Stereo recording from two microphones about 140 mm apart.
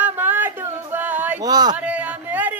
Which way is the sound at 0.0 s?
15° right (ahead or behind).